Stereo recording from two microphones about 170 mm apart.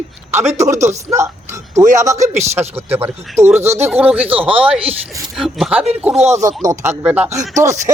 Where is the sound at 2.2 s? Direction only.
40° right (ahead or behind).